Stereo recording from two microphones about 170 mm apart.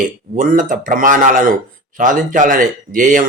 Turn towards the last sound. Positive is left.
turn(degrees=-50)  # may be behind; listen again after turning